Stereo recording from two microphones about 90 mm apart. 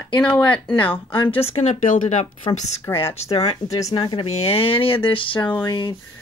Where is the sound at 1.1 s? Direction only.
70° left (ahead or behind).